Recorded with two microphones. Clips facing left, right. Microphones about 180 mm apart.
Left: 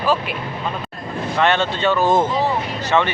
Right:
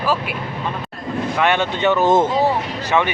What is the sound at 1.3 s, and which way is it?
Speech, 15° right (ahead or behind).